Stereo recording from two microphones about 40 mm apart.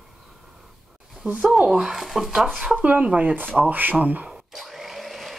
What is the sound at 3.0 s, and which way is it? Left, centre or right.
Speech, right.